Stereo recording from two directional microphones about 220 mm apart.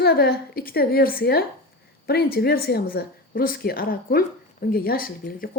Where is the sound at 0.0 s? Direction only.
45° left (ahead or behind).